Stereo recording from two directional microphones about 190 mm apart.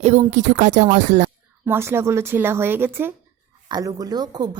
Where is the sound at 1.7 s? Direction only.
15° right (ahead or behind).